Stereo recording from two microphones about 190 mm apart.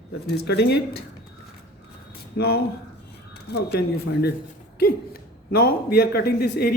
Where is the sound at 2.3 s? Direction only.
55° left (ahead or behind).